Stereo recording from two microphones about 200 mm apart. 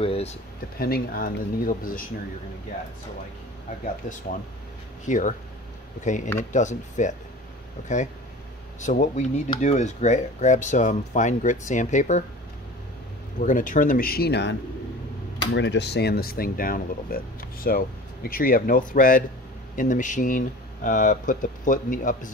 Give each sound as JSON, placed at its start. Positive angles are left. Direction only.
{"t": 0.0, "sound": "speech", "side_deg": 30}
{"t": 0.7, "sound": "speech", "side_deg": 50}
{"t": 3.8, "sound": "speech", "side_deg": 40}
{"t": 6.5, "sound": "speech", "side_deg": 35}
{"t": 8.8, "sound": "speech", "side_deg": 35}
{"t": 13.4, "sound": "speech", "side_deg": 40}